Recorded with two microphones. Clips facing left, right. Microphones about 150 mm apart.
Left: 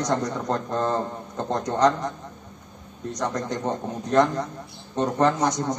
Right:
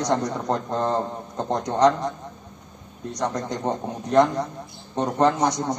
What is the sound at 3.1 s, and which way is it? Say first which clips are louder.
A man's voice: right 1 dB; 15° right (ahead or behind).